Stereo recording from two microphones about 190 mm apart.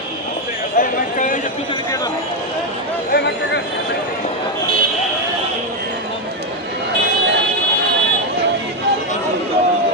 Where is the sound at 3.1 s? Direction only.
65° left (ahead or behind).